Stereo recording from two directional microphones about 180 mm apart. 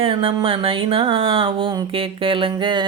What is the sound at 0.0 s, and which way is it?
Music, 30° right (ahead or behind).